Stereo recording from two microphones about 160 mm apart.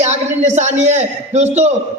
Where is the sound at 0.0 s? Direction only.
45° right (ahead or behind).